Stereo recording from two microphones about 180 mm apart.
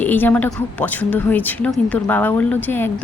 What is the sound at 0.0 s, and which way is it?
Speech, 10° left (ahead or behind).